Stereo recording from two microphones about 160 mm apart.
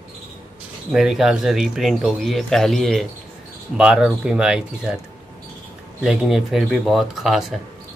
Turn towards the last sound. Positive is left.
turn(degrees=0)  # may be behind; listen again after turning